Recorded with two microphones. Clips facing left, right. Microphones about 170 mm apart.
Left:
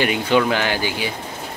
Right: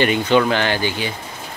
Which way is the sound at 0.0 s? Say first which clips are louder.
Right 2 dB; 5° left (ahead or behind).